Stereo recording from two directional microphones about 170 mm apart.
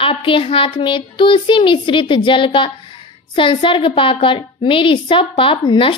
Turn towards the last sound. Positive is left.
turn(degrees=30)  # may be behind; listen again after turning